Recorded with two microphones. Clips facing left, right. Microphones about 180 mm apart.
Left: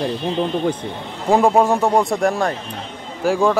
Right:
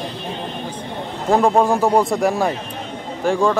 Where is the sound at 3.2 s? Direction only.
5° left (ahead or behind).